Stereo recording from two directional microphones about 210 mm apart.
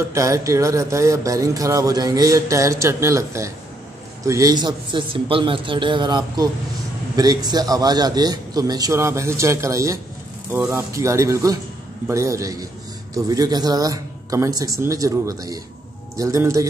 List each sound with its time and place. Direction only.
0.1 s a man's voice: 15° right (ahead or behind)